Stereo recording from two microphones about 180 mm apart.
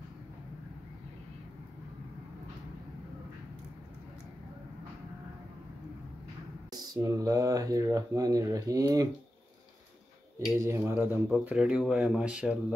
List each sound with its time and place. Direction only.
6.7 s speech: 20° right (ahead or behind)
10.6 s speech: 15° right (ahead or behind)
11.2 s speech: 5° right (ahead or behind)